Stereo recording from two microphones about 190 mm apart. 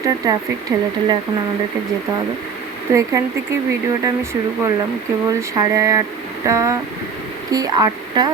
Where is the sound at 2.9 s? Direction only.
15° right (ahead or behind).